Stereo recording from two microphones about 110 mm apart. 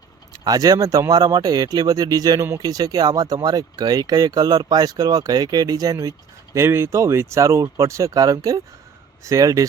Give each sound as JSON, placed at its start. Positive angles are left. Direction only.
{"t": 0.3, "sound": "speech", "side_deg": -35}